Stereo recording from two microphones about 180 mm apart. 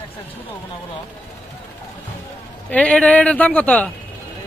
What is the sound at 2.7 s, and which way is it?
Speech, 5° left (ahead or behind).